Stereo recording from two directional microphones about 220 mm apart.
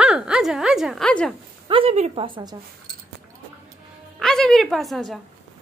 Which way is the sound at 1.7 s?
25° right (ahead or behind).